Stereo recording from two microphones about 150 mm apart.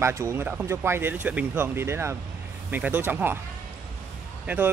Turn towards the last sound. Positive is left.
turn(degrees=-15)  # may be behind; listen again after turning